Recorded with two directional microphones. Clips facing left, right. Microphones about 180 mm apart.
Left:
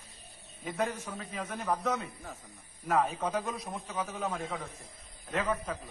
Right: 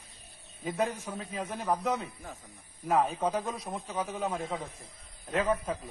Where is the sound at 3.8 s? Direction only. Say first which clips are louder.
Right 2 dB; 10° right (ahead or behind).